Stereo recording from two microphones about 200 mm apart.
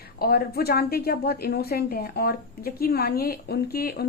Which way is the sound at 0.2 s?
50° left (ahead or behind).